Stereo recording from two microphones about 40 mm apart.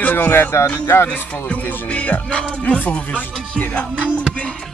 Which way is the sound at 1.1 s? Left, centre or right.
Left.